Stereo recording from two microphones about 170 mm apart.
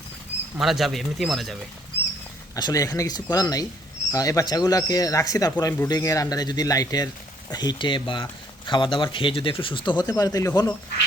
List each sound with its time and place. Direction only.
0.6 s speech: centre (ahead or behind)
2.6 s speech: 20° left (ahead or behind)